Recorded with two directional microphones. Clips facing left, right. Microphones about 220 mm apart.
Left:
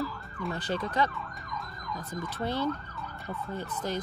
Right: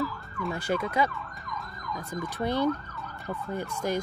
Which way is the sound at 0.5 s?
10° right (ahead or behind).